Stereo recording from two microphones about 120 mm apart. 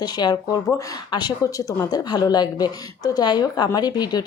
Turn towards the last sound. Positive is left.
turn(degrees=35)  # may be behind; listen again after turning